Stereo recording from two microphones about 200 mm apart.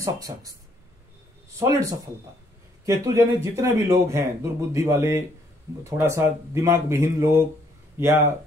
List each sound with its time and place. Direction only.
0.0 s speech: 15° right (ahead or behind)
1.6 s a man's voice: 15° right (ahead or behind)